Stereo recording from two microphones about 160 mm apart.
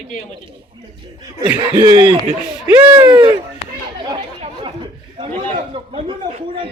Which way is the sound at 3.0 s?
30° right (ahead or behind).